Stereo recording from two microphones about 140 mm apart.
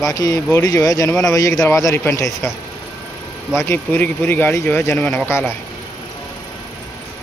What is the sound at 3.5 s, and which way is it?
Speech, 15° left (ahead or behind).